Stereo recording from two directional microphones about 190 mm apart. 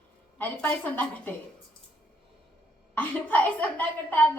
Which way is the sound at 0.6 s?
10° left (ahead or behind).